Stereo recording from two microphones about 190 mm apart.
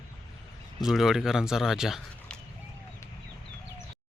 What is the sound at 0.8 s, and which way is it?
Speech, centre (ahead or behind).